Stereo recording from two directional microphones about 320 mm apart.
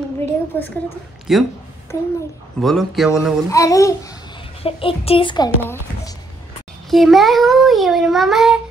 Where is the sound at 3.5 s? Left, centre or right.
Centre.